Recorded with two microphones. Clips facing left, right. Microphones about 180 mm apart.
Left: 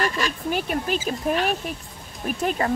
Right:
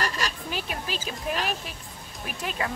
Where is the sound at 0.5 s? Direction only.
50° left (ahead or behind).